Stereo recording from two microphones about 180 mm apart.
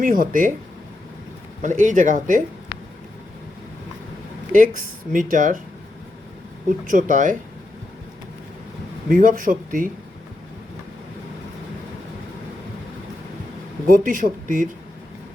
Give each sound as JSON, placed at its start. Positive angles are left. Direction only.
{"t": 0.0, "sound": "speech", "side_deg": -50}
{"t": 1.6, "sound": "speech", "side_deg": -45}
{"t": 4.5, "sound": "speech", "side_deg": -45}
{"t": 6.8, "sound": "speech", "side_deg": -45}
{"t": 9.0, "sound": "speech", "side_deg": -50}
{"t": 13.9, "sound": "speech", "side_deg": -50}